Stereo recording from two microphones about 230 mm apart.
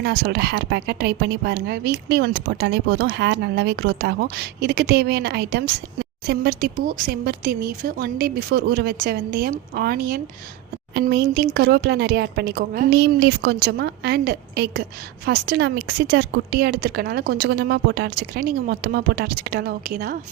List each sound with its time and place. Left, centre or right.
0.0 s speech: right